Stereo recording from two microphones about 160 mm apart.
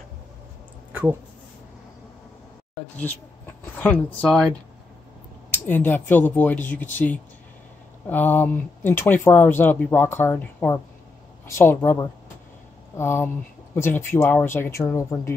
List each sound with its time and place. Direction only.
2.7 s a sound: 10° left (ahead or behind)
3.6 s speech: 10° left (ahead or behind)
5.7 s speech: 10° left (ahead or behind)